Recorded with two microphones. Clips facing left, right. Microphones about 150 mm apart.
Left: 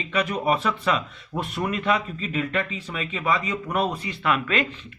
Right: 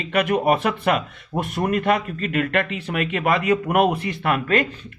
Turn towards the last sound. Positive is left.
turn(degrees=-50)  # may be behind; listen again after turning